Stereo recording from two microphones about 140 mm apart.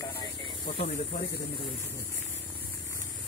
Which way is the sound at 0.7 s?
50° left (ahead or behind).